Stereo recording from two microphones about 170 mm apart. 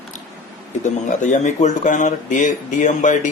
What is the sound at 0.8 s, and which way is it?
Speech, 45° left (ahead or behind).